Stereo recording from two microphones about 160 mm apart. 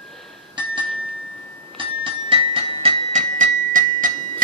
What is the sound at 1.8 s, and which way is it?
Music, 30° right (ahead or behind).